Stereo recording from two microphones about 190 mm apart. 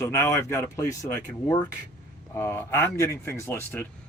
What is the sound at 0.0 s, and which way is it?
Speech, 15° left (ahead or behind).